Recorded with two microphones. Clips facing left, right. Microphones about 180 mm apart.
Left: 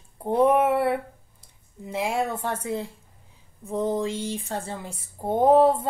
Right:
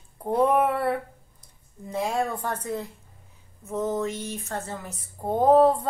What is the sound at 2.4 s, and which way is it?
Speech, 25° left (ahead or behind).